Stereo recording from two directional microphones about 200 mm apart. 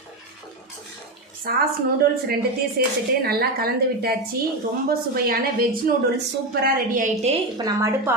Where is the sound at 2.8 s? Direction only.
50° right (ahead or behind).